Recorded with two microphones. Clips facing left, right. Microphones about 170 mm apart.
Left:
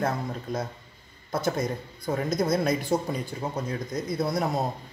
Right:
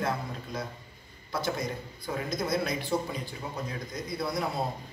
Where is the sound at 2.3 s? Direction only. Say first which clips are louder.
Left 5 dB; 45° left (ahead or behind).